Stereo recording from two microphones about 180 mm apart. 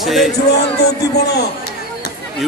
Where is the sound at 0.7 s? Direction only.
65° left (ahead or behind).